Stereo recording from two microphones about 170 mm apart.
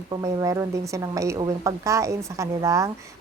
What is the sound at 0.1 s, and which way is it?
A woman's voice, 20° right (ahead or behind).